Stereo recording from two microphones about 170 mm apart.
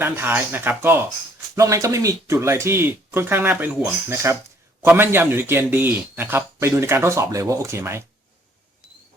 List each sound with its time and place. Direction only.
0.0 s a man's voice: 15° right (ahead or behind)